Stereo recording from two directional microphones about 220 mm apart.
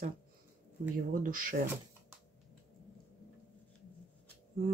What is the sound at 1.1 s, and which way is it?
Speech, 40° right (ahead or behind).